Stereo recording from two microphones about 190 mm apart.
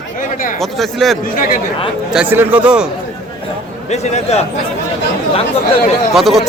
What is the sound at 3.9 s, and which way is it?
Speech, 35° left (ahead or behind).